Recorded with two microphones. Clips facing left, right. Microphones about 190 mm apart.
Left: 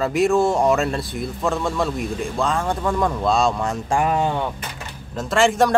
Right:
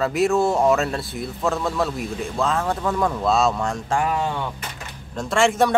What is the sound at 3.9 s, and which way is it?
Speech, 20° left (ahead or behind).